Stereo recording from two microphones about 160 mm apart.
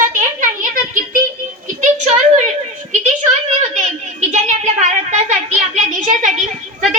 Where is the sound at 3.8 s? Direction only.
45° right (ahead or behind).